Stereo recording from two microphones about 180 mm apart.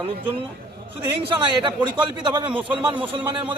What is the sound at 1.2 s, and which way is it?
A man's voice, 25° right (ahead or behind).